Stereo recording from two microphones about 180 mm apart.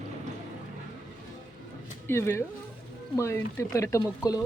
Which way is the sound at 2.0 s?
15° left (ahead or behind).